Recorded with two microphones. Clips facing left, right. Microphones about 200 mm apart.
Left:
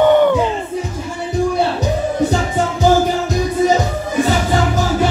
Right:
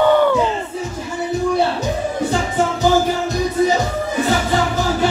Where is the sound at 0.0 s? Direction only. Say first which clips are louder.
Left 3 dB; 20° left (ahead or behind).